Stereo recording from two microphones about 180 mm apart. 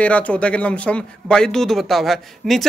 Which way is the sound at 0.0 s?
5° left (ahead or behind).